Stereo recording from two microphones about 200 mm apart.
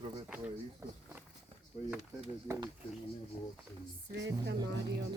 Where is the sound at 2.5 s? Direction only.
15° right (ahead or behind).